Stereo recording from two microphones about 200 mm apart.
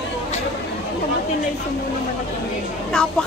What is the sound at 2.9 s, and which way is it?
Speech, 5° left (ahead or behind).